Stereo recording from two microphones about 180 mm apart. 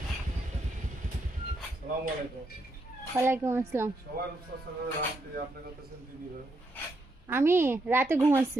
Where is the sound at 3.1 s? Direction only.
15° right (ahead or behind).